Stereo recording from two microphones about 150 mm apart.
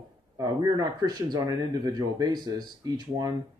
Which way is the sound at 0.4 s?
25° right (ahead or behind).